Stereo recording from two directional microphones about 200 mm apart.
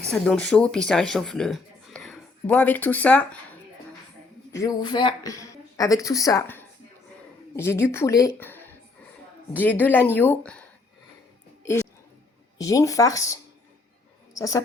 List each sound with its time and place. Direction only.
0.1 s a man's voice: 5° left (ahead or behind)
4.5 s speech: 20° left (ahead or behind)
12.5 s a woman's voice: 15° left (ahead or behind)